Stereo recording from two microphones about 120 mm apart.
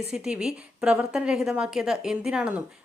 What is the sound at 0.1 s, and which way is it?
A woman's voice, 5° right (ahead or behind).